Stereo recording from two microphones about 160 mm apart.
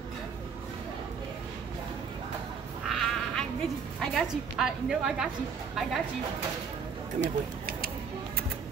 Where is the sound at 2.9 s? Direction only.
Centre (ahead or behind).